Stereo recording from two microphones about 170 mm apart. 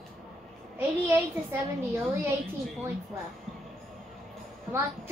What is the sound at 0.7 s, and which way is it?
A woman's voice, 10° right (ahead or behind).